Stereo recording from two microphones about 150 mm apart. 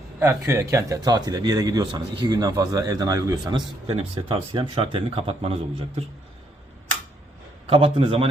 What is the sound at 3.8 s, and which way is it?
A man's voice, 40° right (ahead or behind).